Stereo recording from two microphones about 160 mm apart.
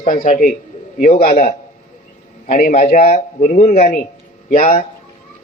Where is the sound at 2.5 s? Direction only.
45° left (ahead or behind).